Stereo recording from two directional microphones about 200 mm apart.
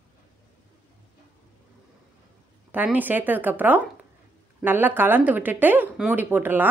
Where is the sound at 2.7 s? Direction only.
10° right (ahead or behind).